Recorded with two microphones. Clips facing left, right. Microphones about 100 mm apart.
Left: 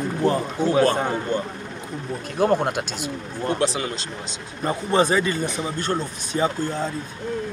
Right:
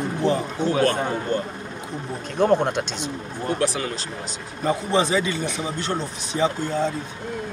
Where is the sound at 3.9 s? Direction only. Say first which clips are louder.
Right 1 dB; 20° left (ahead or behind).